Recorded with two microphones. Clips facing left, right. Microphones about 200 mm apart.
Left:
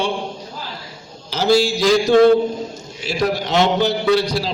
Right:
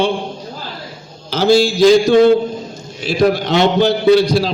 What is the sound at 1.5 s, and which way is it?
Speech, 25° right (ahead or behind).